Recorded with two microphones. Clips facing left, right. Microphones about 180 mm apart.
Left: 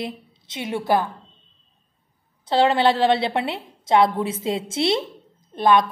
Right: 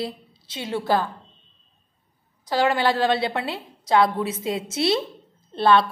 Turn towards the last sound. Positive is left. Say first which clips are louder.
# left 1 dB
turn(degrees=15)  # may be behind; listen again after turning